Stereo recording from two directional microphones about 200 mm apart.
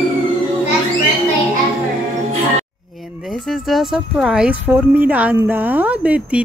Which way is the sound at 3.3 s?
Centre (ahead or behind).